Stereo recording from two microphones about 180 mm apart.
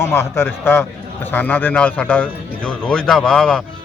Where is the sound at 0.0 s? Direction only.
15° left (ahead or behind).